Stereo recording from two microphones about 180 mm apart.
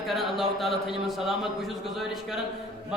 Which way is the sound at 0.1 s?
Centre (ahead or behind).